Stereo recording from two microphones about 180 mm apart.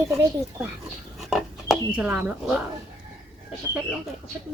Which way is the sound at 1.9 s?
10° right (ahead or behind).